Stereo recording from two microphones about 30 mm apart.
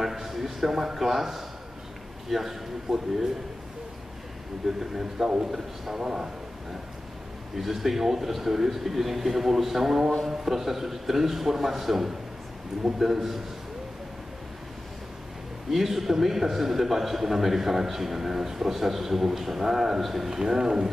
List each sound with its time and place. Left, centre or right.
0.0 s a sound: centre
2.2 s a man's voice: centre
4.6 s a man's voice: centre
6.0 s a man's voice: right
7.5 s a man's voice: centre
15.7 s a man's voice: centre